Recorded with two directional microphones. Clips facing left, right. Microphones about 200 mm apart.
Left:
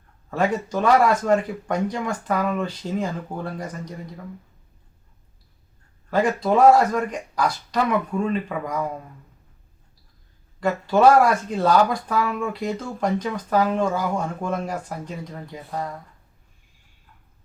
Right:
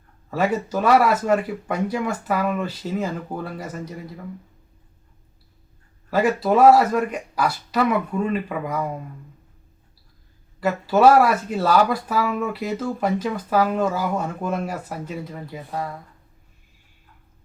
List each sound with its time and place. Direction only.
0.3 s speech: 5° right (ahead or behind)
6.1 s speech: 5° right (ahead or behind)
10.6 s speech: 5° right (ahead or behind)